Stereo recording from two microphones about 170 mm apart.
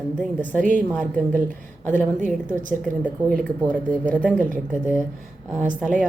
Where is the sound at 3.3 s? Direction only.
10° left (ahead or behind).